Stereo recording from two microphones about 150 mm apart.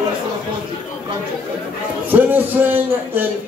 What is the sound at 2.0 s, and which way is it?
Speech, 10° right (ahead or behind).